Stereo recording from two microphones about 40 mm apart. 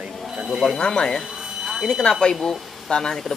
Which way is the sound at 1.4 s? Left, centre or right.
Centre.